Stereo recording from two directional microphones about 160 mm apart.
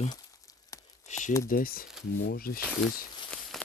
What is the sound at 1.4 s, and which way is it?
Speech, 60° left (ahead or behind).